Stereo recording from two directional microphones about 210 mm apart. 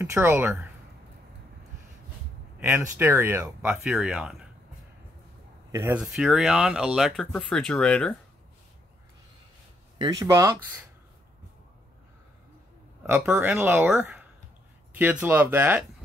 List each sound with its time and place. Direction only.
0.0 s speech: 15° right (ahead or behind)
2.6 s speech: 10° right (ahead or behind)
5.7 s speech: 15° right (ahead or behind)
6.1 s speech: centre (ahead or behind)
9.9 s speech: 20° right (ahead or behind)
13.0 s speech: 10° right (ahead or behind)